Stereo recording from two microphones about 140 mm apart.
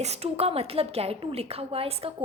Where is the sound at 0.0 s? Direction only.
50° right (ahead or behind).